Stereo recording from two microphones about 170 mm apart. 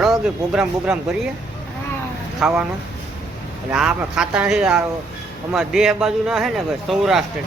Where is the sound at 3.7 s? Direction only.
5° right (ahead or behind).